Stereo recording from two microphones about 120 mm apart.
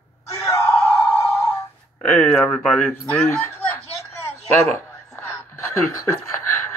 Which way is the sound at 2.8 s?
20° left (ahead or behind).